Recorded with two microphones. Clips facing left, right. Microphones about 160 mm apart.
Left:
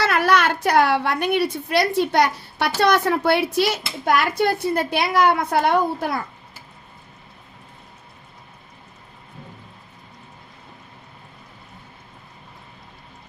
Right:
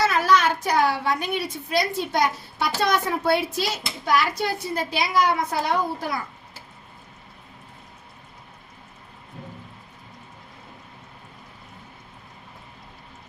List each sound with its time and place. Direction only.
0.0 s a woman's voice: 65° left (ahead or behind)